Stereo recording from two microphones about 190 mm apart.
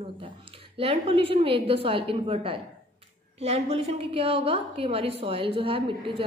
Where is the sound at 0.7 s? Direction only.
30° right (ahead or behind).